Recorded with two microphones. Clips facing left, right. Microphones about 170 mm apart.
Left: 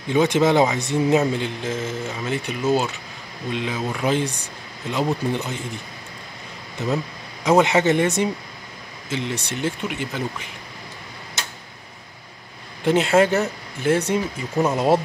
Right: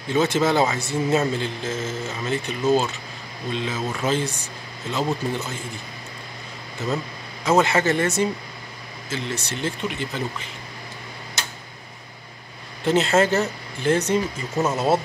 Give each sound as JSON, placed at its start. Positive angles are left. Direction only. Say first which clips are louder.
{"t": 0.1, "sound": "speech", "louder": "left 3 dB", "side_deg": 15}
{"t": 7.4, "sound": "speech", "louder": "left 2 dB", "side_deg": 15}
{"t": 12.8, "sound": "speech", "louder": "left 2 dB", "side_deg": 10}